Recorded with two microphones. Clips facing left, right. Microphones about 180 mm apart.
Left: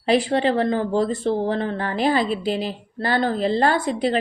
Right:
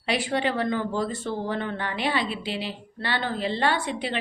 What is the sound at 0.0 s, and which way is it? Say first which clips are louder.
A woman's voice: left 7 dB; 35° left (ahead or behind).